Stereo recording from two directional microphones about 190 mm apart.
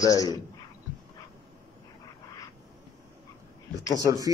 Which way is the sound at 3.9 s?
20° right (ahead or behind).